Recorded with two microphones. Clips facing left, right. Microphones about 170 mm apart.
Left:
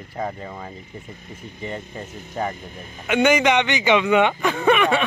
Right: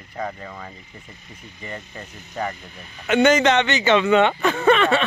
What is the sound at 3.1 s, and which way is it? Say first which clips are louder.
A man's voice: right 1 dB; 10° left (ahead or behind).